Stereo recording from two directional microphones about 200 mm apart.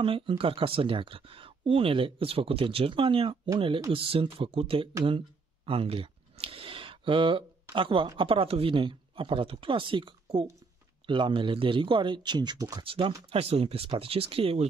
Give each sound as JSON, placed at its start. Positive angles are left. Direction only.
{"t": 0.0, "sound": "speech", "side_deg": -25}